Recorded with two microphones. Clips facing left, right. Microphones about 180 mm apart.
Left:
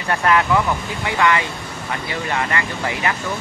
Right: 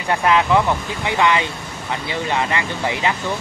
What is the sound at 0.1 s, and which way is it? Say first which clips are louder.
Speech: right 1 dB; 15° right (ahead or behind).